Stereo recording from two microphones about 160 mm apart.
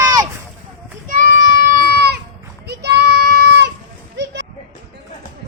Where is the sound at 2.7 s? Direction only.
90° right.